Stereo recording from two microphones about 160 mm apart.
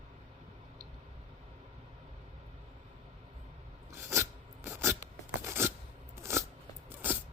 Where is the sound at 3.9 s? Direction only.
15° right (ahead or behind).